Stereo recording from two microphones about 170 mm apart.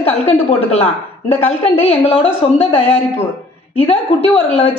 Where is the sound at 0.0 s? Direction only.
35° left (ahead or behind).